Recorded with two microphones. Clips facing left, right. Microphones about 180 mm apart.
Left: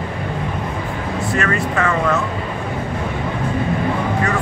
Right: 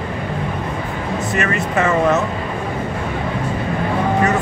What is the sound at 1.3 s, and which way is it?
Vehicle, 20° right (ahead or behind).